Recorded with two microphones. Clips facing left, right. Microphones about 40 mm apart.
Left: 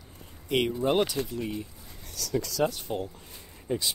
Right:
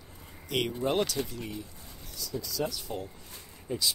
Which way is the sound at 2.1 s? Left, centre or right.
Left.